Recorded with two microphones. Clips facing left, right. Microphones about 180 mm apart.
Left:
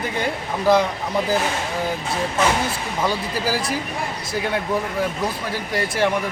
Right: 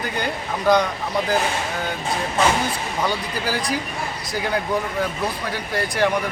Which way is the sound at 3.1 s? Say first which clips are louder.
Left 2 dB; centre (ahead or behind).